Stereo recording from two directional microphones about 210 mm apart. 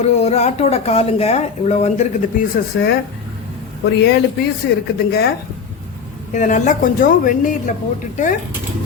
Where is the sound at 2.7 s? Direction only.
50° left (ahead or behind).